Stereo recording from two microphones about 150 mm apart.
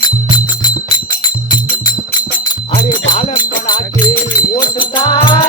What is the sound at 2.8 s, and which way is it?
Music, 30° left (ahead or behind).